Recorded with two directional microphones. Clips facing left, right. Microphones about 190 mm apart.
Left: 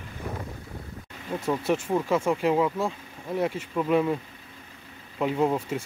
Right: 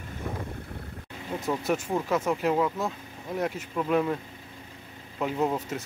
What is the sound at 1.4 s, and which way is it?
Speech, 10° left (ahead or behind).